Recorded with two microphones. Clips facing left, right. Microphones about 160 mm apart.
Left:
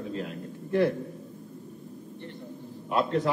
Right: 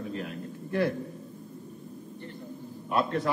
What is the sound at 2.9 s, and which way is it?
Speech, 20° left (ahead or behind).